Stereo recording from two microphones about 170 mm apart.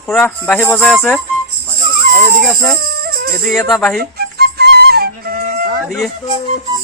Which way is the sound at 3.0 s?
60° right (ahead or behind).